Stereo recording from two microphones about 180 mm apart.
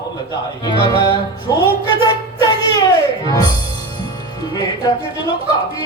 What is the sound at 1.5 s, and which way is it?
Speech, 20° left (ahead or behind).